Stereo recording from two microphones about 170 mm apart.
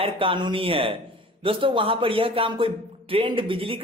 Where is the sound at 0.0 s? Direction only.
30° right (ahead or behind).